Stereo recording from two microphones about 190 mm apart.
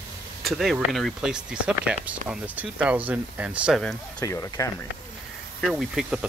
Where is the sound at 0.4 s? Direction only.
Centre (ahead or behind).